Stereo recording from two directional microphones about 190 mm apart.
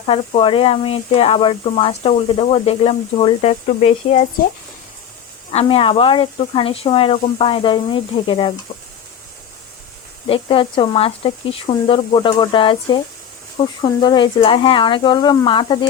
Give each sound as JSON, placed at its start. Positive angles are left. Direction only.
{"t": 0.0, "sound": "speech", "side_deg": 30}
{"t": 5.5, "sound": "speech", "side_deg": 30}
{"t": 10.2, "sound": "speech", "side_deg": 30}